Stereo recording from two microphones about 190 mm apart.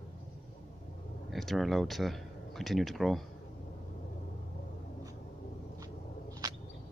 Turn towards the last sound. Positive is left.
turn(degrees=-20)  # may be behind; listen again after turning